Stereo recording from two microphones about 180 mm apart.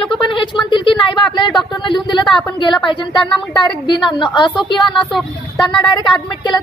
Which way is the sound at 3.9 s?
25° left (ahead or behind).